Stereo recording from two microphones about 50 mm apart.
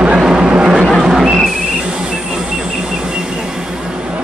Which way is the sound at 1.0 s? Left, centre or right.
Centre.